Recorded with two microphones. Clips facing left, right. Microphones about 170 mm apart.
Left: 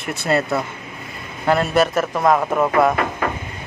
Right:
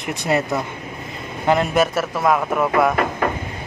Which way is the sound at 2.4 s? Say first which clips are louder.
Left 1 dB; 5° left (ahead or behind).